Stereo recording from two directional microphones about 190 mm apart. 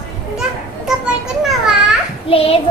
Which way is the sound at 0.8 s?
5° right (ahead or behind).